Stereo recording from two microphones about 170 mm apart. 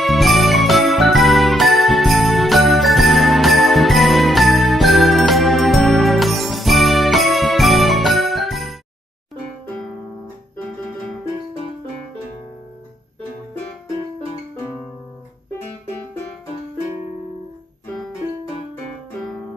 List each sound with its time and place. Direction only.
0.0 s music: centre (ahead or behind)